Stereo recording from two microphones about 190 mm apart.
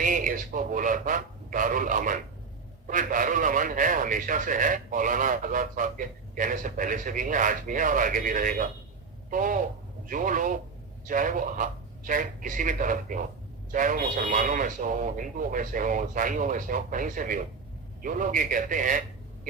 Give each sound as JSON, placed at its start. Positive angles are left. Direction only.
{"t": 0.0, "sound": "a man's voice", "side_deg": -45}